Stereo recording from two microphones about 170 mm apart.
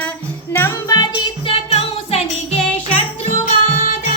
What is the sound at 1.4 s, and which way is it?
Music, 35° left (ahead or behind).